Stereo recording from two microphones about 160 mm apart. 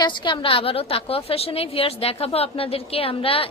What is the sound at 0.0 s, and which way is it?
A woman's voice, 30° left (ahead or behind).